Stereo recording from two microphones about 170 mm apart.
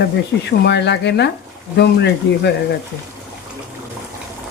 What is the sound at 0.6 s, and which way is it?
Speech, 90° left.